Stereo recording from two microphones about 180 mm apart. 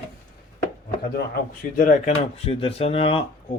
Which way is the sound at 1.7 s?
45° left (ahead or behind).